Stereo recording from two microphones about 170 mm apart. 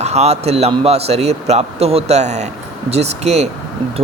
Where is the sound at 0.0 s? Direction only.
40° right (ahead or behind).